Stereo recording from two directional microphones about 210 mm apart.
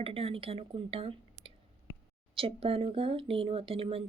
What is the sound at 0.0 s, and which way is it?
Speech, 25° right (ahead or behind).